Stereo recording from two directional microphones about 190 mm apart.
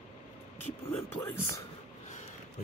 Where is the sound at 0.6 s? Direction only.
10° left (ahead or behind).